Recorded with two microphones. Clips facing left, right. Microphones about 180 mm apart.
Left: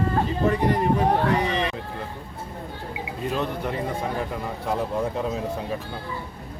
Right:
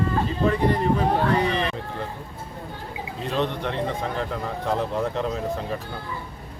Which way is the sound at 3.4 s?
5° left (ahead or behind).